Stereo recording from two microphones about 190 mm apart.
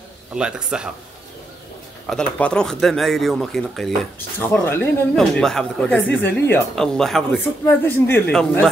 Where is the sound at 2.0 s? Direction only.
5° left (ahead or behind).